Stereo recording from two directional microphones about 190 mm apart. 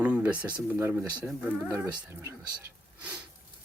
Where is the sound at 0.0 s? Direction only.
5° right (ahead or behind).